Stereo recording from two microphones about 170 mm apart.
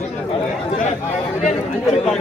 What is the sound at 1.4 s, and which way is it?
Speech, 45° left (ahead or behind).